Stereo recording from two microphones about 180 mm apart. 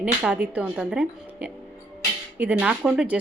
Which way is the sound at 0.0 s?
5° right (ahead or behind).